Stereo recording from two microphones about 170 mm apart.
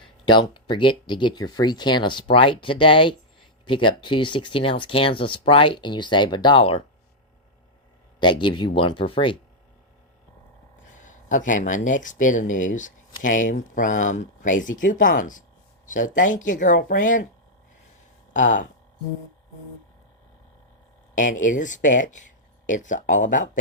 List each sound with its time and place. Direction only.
0.0 s speech: 30° left (ahead or behind)
8.2 s speech: 30° left (ahead or behind)
11.0 s speech: 50° left (ahead or behind)
18.3 s speech: 50° left (ahead or behind)
21.2 s speech: 50° left (ahead or behind)